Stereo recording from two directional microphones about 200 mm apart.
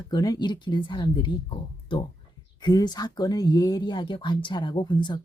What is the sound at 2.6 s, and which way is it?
Speech, 20° left (ahead or behind).